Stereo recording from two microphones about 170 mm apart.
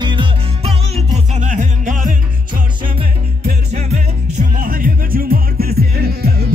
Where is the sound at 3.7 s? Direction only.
45° right (ahead or behind).